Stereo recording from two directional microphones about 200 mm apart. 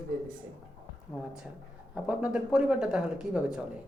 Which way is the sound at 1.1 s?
Centre (ahead or behind).